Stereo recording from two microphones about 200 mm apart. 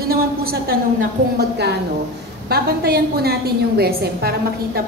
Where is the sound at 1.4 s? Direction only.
55° right (ahead or behind).